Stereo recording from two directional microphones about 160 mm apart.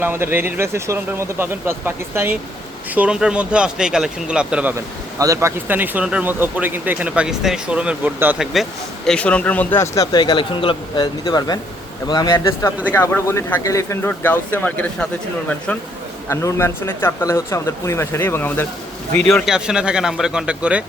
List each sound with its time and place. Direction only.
0.0 s speech: 15° right (ahead or behind)
5.2 s speech: 20° right (ahead or behind)
9.0 s speech: 5° left (ahead or behind)
19.3 s speech: centre (ahead or behind)